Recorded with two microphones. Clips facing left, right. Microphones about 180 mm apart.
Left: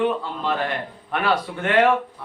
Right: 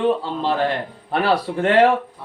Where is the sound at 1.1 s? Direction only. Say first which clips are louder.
Right 4 dB; 35° right (ahead or behind).